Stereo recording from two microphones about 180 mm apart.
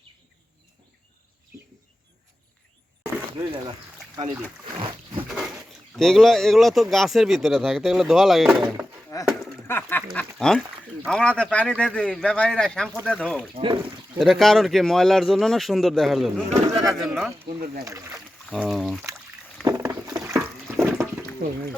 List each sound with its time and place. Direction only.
3.3 s speech: 25° right (ahead or behind)
5.3 s speech: centre (ahead or behind)
9.1 s a sound: 20° left (ahead or behind)
10.1 s speech: centre (ahead or behind)
17.8 s speech: 15° right (ahead or behind)
18.4 s speech: centre (ahead or behind)
19.6 s a sound: 15° right (ahead or behind)